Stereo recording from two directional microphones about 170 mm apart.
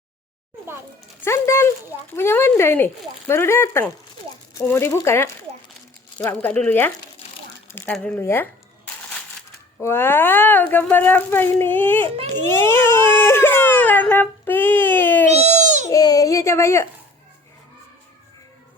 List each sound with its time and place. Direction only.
1.2 s speech: 15° left (ahead or behind)
9.8 s speech: 15° left (ahead or behind)
12.0 s a child's voice: 35° right (ahead or behind)
12.3 s speech: 15° left (ahead or behind)
15.4 s baby cry: 45° right (ahead or behind)
15.9 s a child's voice: 20° left (ahead or behind)